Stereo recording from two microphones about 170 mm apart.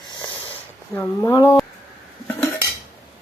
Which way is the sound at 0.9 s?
15° left (ahead or behind).